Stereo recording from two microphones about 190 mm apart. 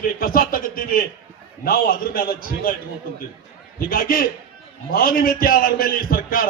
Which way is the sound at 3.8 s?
50° left (ahead or behind).